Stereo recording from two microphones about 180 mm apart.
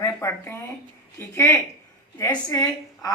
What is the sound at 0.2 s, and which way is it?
Speech, 15° left (ahead or behind).